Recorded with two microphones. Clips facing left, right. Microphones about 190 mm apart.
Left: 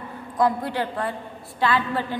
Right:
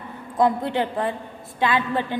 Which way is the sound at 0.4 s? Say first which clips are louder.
Right 2 dB; 25° right (ahead or behind).